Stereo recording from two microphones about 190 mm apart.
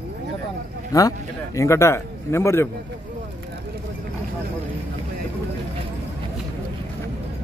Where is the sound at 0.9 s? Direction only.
20° left (ahead or behind).